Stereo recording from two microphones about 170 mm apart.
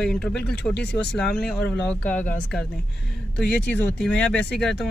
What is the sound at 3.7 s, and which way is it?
Speech, 5° left (ahead or behind).